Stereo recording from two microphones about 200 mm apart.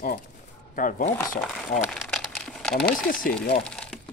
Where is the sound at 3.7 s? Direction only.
5° left (ahead or behind).